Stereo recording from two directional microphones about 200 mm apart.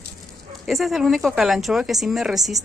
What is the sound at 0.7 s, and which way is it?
Speech, centre (ahead or behind).